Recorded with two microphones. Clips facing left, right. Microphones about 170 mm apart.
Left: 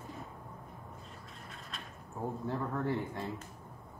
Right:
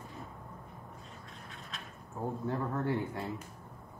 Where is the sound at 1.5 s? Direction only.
Centre (ahead or behind).